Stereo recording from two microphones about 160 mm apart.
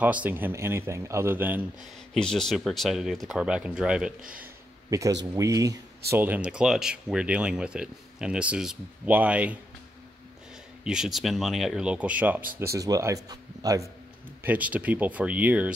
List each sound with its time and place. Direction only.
0.0 s speech: 10° right (ahead or behind)
2.1 s speech: 5° left (ahead or behind)
4.8 s a man's voice: 20° right (ahead or behind)
10.8 s speech: 5° right (ahead or behind); by 13.8 s 25° right (ahead or behind)
14.4 s speech: 10° right (ahead or behind)